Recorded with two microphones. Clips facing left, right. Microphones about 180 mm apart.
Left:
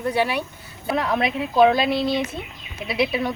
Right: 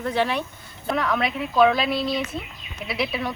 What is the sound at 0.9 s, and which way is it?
Speech, 30° left (ahead or behind).